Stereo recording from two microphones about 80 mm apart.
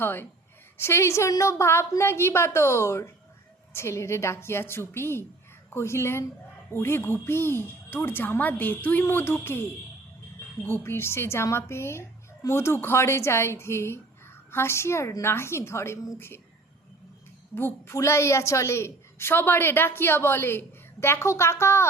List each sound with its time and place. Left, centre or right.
0.0 s a woman's voice: left
10.7 s a woman's voice: left
17.5 s a woman's voice: left